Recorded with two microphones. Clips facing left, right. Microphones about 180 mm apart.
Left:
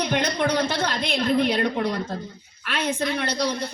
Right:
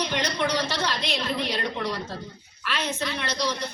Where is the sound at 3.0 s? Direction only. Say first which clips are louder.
Left 4 dB; 50° left (ahead or behind).